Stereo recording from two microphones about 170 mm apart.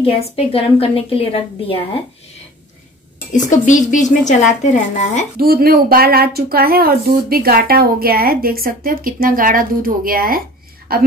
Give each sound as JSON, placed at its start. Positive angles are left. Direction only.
{"t": 0.0, "sound": "a woman's voice", "side_deg": 35}
{"t": 3.3, "sound": "speech", "side_deg": 45}
{"t": 5.4, "sound": "speech", "side_deg": -60}